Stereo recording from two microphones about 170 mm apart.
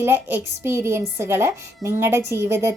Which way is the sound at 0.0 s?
15° right (ahead or behind).